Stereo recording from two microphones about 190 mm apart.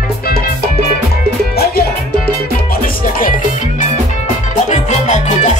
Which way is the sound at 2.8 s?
45° left (ahead or behind).